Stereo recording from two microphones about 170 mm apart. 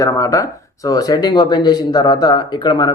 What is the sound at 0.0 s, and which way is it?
Speech, 20° left (ahead or behind).